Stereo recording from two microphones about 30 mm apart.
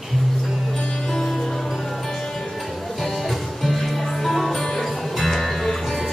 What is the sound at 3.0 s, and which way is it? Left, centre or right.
Music, centre.